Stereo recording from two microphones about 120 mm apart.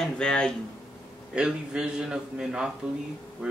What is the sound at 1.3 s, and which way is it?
Speech, 5° right (ahead or behind).